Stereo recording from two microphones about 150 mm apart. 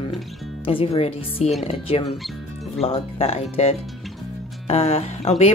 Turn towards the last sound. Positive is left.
turn(degrees=45)  # may be behind; listen again after turning